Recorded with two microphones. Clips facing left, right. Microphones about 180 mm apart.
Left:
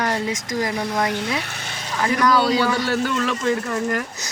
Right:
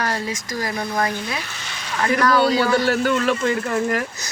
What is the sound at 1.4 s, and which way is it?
Frying, 55° left (ahead or behind).